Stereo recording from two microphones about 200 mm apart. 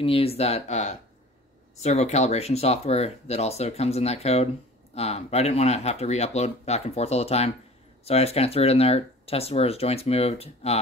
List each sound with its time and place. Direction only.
0.0 s speech: 30° left (ahead or behind)